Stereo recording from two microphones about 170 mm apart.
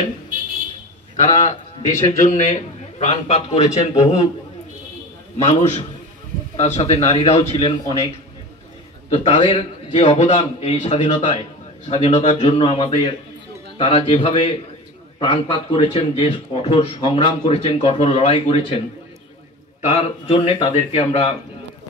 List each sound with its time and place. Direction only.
1.1 s a man's voice: 45° left (ahead or behind)
5.4 s a man's voice: 45° left (ahead or behind)
9.1 s a man's voice: 35° left (ahead or behind)
19.9 s a man's voice: 35° left (ahead or behind)